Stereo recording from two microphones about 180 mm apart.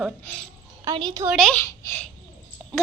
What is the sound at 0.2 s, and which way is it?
Speech, 10° left (ahead or behind).